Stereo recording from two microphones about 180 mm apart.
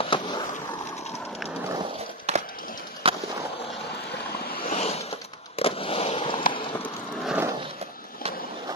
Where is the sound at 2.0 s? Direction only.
35° right (ahead or behind).